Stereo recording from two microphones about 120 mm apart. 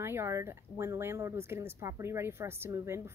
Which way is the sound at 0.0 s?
20° right (ahead or behind).